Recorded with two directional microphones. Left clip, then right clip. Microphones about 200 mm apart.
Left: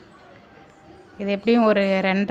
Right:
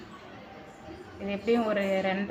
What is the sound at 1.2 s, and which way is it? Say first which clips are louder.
Speech: left 9 dB; 60° left (ahead or behind).